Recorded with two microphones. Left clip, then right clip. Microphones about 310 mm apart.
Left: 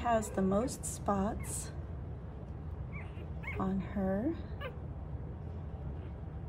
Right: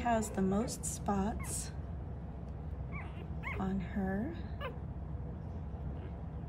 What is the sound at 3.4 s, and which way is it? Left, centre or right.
Dog, centre.